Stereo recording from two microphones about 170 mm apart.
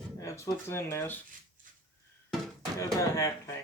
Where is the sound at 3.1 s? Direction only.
15° left (ahead or behind).